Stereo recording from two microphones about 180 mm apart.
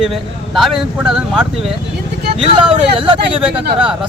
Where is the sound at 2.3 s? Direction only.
30° right (ahead or behind).